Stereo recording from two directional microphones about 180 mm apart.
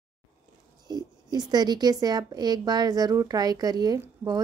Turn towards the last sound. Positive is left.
turn(degrees=-20)  # may be behind; listen again after turning